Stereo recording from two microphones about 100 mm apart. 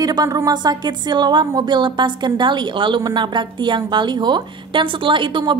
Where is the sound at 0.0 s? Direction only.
40° right (ahead or behind).